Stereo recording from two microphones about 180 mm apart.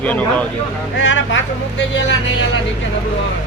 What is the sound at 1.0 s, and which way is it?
Speech, 90° left.